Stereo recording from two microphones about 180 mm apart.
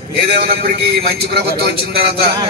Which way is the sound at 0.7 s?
60° right (ahead or behind).